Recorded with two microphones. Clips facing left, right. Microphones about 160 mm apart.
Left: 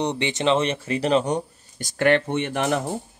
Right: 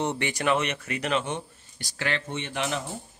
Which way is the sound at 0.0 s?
20° left (ahead or behind).